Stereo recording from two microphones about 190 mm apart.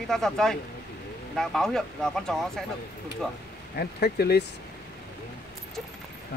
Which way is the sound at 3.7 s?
55° left (ahead or behind).